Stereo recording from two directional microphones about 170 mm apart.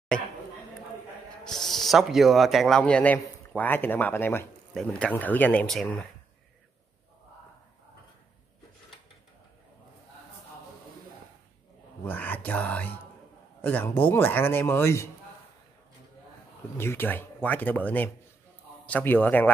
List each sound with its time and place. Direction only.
1.4 s speech: centre (ahead or behind)
12.0 s speech: 10° left (ahead or behind)
16.7 s speech: 15° left (ahead or behind)